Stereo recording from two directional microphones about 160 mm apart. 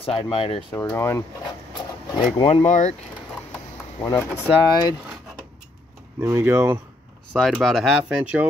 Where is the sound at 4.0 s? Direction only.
20° left (ahead or behind).